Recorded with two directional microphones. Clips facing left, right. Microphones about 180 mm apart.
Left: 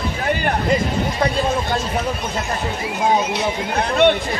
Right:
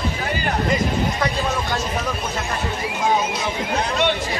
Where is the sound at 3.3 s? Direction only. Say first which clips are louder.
Left 2 dB; 55° left (ahead or behind).